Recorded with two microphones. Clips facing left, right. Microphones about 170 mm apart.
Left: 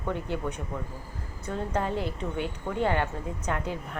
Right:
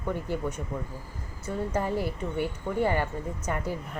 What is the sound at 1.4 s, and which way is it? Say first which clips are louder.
A woman's voice: right 1 dB; 10° right (ahead or behind).